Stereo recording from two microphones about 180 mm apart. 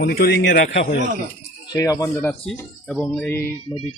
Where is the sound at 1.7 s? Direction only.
20° left (ahead or behind).